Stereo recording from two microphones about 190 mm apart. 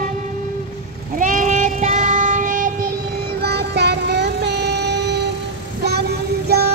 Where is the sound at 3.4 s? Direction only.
60° right (ahead or behind).